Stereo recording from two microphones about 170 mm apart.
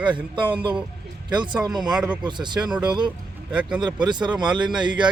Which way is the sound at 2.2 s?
25° right (ahead or behind).